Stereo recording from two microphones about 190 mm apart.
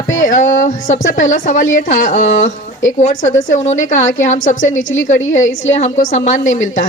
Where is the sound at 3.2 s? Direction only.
90° left.